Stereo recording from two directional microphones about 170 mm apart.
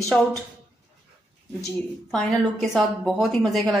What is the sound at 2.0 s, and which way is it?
A woman's voice, centre (ahead or behind).